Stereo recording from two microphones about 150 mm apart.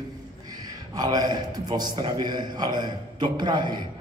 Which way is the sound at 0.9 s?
25° right (ahead or behind).